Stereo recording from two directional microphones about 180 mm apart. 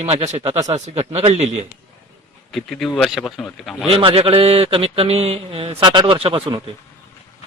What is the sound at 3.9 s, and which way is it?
Speech, 30° right (ahead or behind).